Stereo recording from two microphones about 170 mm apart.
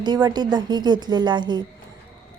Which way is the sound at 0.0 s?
25° right (ahead or behind).